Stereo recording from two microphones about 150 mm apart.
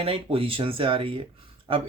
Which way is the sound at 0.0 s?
40° right (ahead or behind).